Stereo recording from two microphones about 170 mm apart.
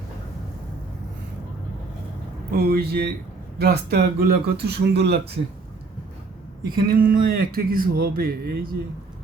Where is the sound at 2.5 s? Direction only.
65° right (ahead or behind).